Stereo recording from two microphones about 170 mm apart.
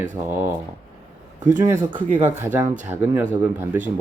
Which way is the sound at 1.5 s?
15° right (ahead or behind).